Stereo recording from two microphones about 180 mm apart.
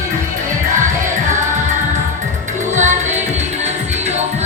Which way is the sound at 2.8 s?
40° right (ahead or behind).